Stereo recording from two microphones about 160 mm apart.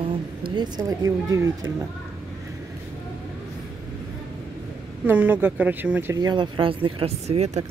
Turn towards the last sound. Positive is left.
turn(degrees=-40)  # may be behind; listen again after turning